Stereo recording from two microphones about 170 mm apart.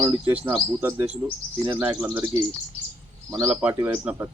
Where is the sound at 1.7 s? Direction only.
10° right (ahead or behind).